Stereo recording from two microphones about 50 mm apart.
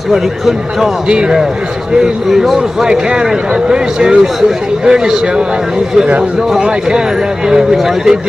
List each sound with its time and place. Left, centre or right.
0.1 s a man's voice: centre
1.0 s a man's voice: centre
2.0 s a man's voice: centre
6.5 s a man's voice: centre